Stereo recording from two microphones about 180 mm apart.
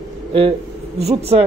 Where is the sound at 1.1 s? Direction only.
35° right (ahead or behind).